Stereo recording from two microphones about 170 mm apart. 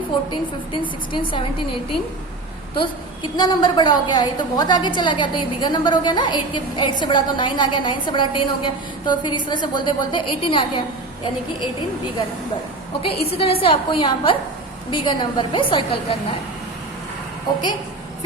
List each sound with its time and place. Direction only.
0.3 s a woman's voice: 30° left (ahead or behind)
3.3 s a woman's voice: 25° left (ahead or behind)
13.1 s a woman's voice: 35° left (ahead or behind)